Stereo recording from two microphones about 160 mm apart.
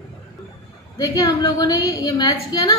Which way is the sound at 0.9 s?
25° left (ahead or behind).